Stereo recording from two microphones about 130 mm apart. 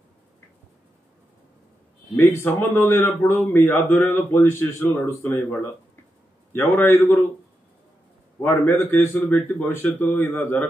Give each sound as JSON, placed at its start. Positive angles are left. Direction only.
{"t": 2.1, "sound": "a man's voice", "side_deg": 15}
{"t": 8.4, "sound": "speech", "side_deg": 15}